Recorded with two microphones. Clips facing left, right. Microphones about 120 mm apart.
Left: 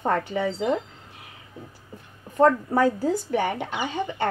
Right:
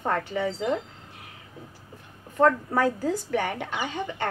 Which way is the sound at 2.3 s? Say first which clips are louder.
Left 2 dB; 25° left (ahead or behind).